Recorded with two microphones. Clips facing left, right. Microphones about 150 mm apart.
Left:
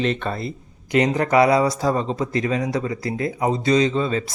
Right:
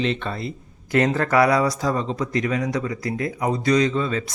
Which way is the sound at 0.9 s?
20° left (ahead or behind).